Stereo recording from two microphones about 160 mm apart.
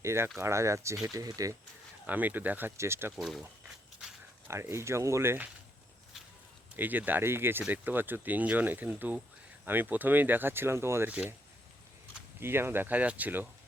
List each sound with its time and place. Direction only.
0.0 s speech: 15° right (ahead or behind)
2.0 s speech: 10° right (ahead or behind)
3.2 s speech: centre (ahead or behind)
4.4 s speech: 15° right (ahead or behind)
6.7 s speech: 10° right (ahead or behind)
12.4 s speech: 15° right (ahead or behind)